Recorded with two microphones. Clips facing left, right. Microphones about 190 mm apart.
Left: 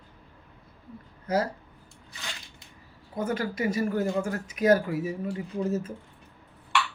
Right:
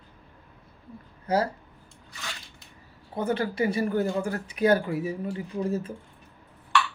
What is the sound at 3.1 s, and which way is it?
Speech, 30° right (ahead or behind).